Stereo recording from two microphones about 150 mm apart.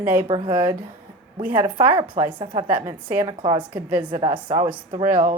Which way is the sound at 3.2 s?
30° right (ahead or behind).